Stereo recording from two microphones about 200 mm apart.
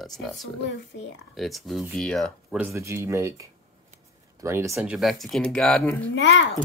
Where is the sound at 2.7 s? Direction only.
15° right (ahead or behind).